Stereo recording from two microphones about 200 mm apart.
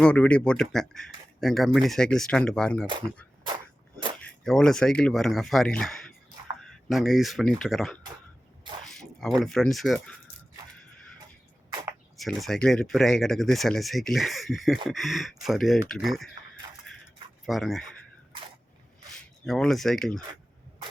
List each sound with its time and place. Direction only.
0.0 s speech: 5° left (ahead or behind)
4.4 s speech: centre (ahead or behind)
11.7 s a sound: 20° right (ahead or behind)
12.1 s speech: centre (ahead or behind)
17.4 s speech: centre (ahead or behind)
19.1 s speech: centre (ahead or behind)